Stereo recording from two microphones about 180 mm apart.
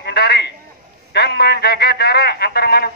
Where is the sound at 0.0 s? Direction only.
65° left (ahead or behind).